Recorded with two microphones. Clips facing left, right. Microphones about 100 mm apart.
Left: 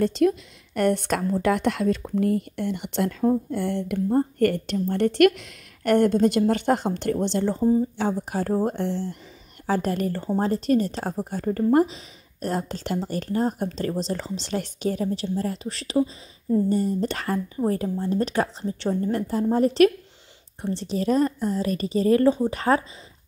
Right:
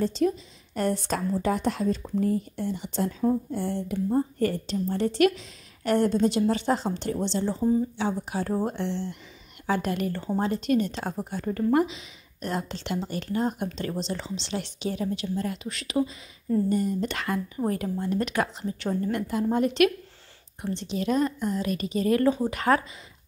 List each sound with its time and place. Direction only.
0.0 s a woman's voice: 65° left (ahead or behind); by 22.8 s 30° left (ahead or behind)